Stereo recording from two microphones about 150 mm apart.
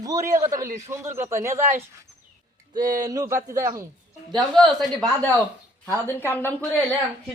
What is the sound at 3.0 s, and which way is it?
Speech, 20° right (ahead or behind).